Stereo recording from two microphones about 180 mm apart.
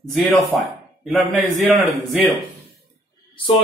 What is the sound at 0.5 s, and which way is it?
A man's voice, centre (ahead or behind).